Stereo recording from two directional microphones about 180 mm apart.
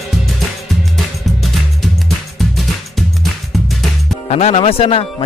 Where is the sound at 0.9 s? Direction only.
Centre (ahead or behind).